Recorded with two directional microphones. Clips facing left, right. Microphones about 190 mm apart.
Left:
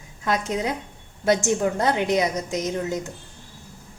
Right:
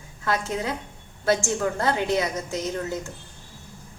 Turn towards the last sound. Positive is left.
turn(degrees=20)  # may be behind; listen again after turning